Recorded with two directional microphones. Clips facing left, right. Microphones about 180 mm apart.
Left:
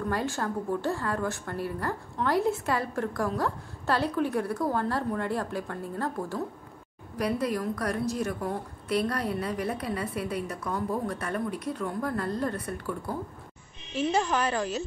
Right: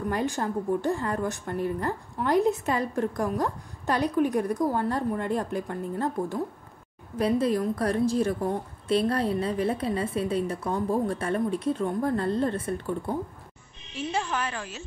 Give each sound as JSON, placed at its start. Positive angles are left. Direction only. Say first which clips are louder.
{"t": 0.1, "sound": "a woman's voice", "louder": "right 3 dB", "side_deg": -20}
{"t": 13.9, "sound": "a woman's voice", "louder": "left 4 dB", "side_deg": 40}